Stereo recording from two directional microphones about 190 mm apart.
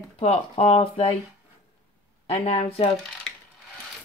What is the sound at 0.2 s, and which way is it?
Speech, 30° left (ahead or behind).